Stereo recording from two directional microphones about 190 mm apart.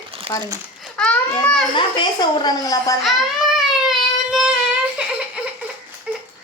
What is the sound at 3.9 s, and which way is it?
Child singing, centre (ahead or behind).